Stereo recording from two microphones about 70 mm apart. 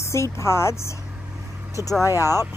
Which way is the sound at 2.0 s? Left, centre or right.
Left.